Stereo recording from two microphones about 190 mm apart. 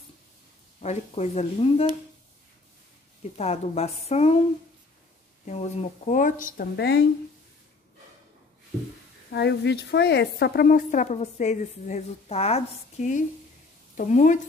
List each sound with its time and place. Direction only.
0.8 s speech: 35° left (ahead or behind)
3.3 s speech: 35° left (ahead or behind)
5.4 s speech: 35° left (ahead or behind); by 7.1 s 60° left (ahead or behind)
9.3 s speech: 60° left (ahead or behind); by 14.4 s 40° left (ahead or behind)